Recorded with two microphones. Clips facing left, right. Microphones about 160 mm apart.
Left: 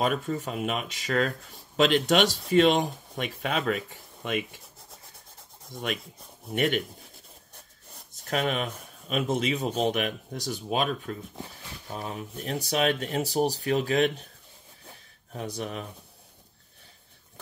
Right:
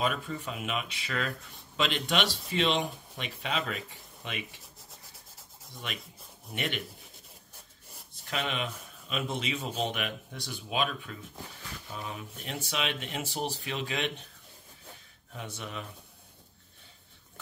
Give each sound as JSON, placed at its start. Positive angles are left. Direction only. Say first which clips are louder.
{"t": 0.0, "sound": "a man's voice", "louder": "left 5 dB", "side_deg": 45}
{"t": 5.7, "sound": "a man's voice", "louder": "left 9 dB", "side_deg": 50}
{"t": 8.3, "sound": "a man's voice", "louder": "left 6 dB", "side_deg": 45}
{"t": 15.3, "sound": "speech", "louder": "left 7 dB", "side_deg": 35}